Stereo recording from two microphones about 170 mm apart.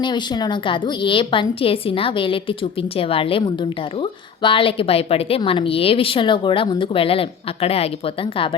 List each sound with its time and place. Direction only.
0.0 s a woman's voice: 25° left (ahead or behind)